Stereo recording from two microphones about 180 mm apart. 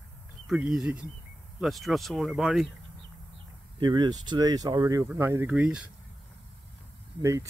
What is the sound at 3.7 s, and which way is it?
Speech, 25° right (ahead or behind).